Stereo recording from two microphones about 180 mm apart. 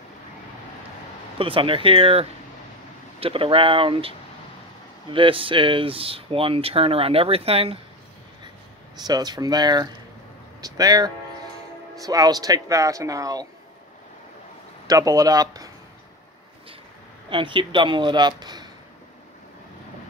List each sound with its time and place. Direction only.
1.4 s speech: 30° right (ahead or behind)
5.1 s speech: 30° right (ahead or behind)
9.0 s speech: 20° right (ahead or behind)
14.9 s speech: 20° right (ahead or behind)
17.3 s speech: 30° right (ahead or behind)